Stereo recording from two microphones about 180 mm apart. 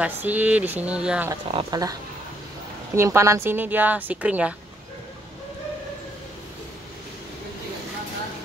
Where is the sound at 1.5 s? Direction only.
25° right (ahead or behind).